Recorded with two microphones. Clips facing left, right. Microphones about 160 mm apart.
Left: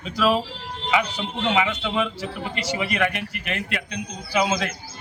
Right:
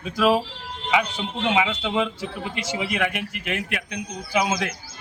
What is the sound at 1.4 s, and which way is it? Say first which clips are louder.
Speech: even; 15° right (ahead or behind).